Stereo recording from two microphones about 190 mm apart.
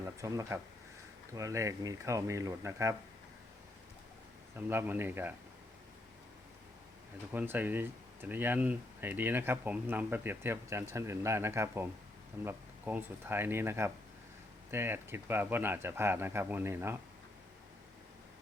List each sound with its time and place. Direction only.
0.0 s speech: 15° right (ahead or behind)
4.5 s speech: 10° right (ahead or behind)
7.3 s speech: 10° right (ahead or behind)